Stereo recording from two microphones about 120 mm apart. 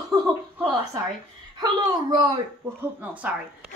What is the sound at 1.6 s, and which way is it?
Speech, 30° right (ahead or behind).